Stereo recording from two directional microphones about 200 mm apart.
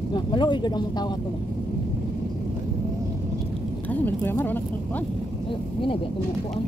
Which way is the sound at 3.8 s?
10° left (ahead or behind).